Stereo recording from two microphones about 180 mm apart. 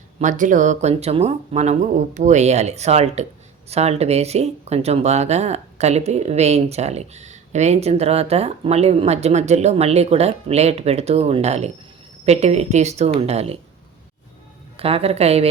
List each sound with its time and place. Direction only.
0.2 s speech: 45° right (ahead or behind)
14.8 s speech: 30° right (ahead or behind)